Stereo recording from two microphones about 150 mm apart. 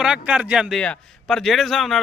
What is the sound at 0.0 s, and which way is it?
A man's voice, 5° right (ahead or behind).